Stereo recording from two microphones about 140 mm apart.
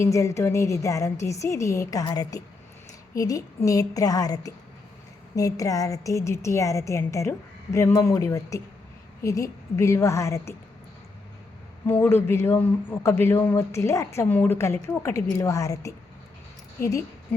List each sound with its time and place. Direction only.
0.0 s speech: 20° left (ahead or behind)
11.9 s speech: 15° left (ahead or behind)